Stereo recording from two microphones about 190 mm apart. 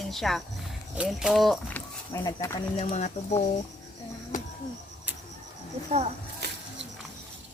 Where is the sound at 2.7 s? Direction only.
35° left (ahead or behind).